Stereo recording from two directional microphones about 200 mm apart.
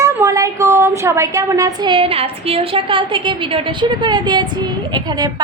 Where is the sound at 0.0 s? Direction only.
15° right (ahead or behind).